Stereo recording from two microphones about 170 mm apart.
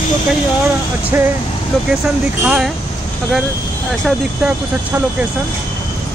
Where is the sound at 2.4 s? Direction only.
5° right (ahead or behind).